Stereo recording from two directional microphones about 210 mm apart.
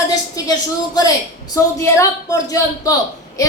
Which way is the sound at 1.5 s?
15° left (ahead or behind).